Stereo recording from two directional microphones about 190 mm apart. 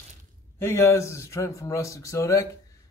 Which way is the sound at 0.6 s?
15° left (ahead or behind).